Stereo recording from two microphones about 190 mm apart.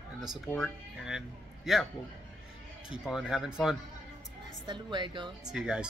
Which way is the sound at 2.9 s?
Centre (ahead or behind).